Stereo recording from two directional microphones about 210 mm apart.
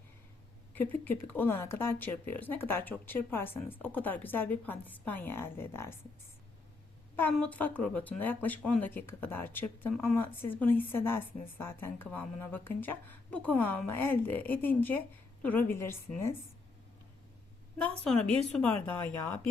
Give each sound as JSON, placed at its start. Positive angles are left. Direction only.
{"t": 0.7, "sound": "speech", "side_deg": 10}
{"t": 7.2, "sound": "speech", "side_deg": 5}
{"t": 18.0, "sound": "a woman's voice", "side_deg": 5}